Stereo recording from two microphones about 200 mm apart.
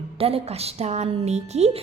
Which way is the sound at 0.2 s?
30° right (ahead or behind).